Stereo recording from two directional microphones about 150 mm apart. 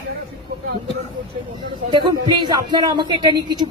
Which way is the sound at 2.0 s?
30° right (ahead or behind).